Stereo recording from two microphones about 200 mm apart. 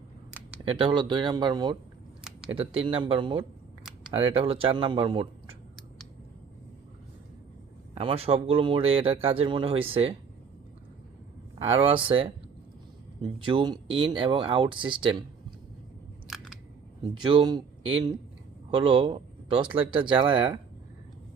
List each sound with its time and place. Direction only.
0.3 s a sound: 5° right (ahead or behind)
0.6 s speech: 25° right (ahead or behind)
7.9 s speech: 30° right (ahead or behind)
11.6 s speech: 30° right (ahead or behind)
13.4 s speech: 25° right (ahead or behind)
16.2 s biting: centre (ahead or behind)
17.2 s speech: 20° right (ahead or behind)